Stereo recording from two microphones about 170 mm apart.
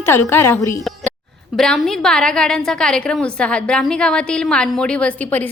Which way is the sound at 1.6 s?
Centre (ahead or behind).